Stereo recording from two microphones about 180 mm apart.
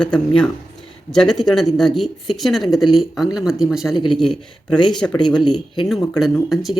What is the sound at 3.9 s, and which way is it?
Speech, 25° left (ahead or behind).